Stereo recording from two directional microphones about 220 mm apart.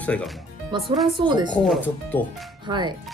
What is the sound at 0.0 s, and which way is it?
Speech, 5° left (ahead or behind).